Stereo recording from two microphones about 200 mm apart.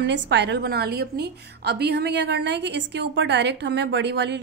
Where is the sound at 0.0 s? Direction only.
60° right (ahead or behind).